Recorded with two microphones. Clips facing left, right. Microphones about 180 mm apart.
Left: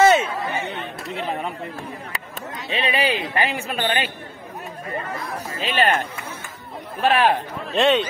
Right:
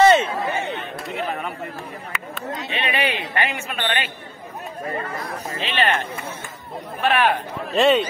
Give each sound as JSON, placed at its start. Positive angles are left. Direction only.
{"t": 0.0, "sound": "chatter", "side_deg": 5}
{"t": 2.8, "sound": "a sound", "side_deg": 30}
{"t": 3.3, "sound": "speech", "side_deg": 35}
{"t": 5.6, "sound": "speech", "side_deg": 40}
{"t": 7.0, "sound": "speech", "side_deg": 30}
{"t": 7.7, "sound": "a man's voice", "side_deg": -5}